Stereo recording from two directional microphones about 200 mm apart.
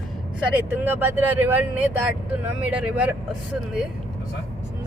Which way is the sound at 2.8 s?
5° right (ahead or behind).